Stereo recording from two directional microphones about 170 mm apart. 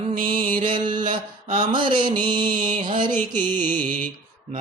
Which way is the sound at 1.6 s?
30° right (ahead or behind).